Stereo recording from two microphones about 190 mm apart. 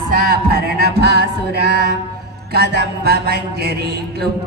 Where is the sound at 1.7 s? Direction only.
65° left (ahead or behind).